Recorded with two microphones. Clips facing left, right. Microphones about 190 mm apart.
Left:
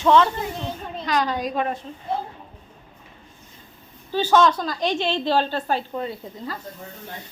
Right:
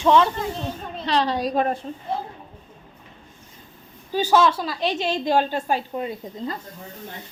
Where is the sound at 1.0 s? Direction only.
30° right (ahead or behind).